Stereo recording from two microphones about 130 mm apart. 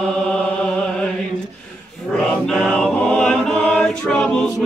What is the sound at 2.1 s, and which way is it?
Chant, 5° left (ahead or behind).